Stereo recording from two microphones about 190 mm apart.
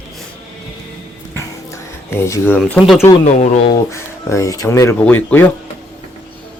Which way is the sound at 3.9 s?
15° left (ahead or behind).